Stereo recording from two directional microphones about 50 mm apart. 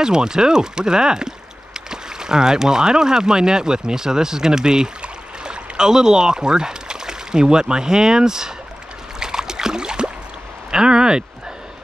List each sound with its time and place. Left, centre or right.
0.0 s speech: centre
9.2 s a sound: centre
10.7 s speech: centre